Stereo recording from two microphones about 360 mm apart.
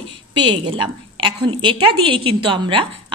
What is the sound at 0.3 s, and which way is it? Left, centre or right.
A woman's voice, centre.